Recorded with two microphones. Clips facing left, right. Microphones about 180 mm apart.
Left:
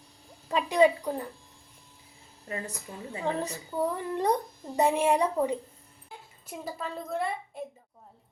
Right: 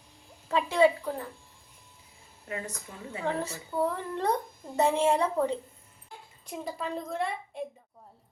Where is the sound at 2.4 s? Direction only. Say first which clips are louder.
Even; 35° left (ahead or behind).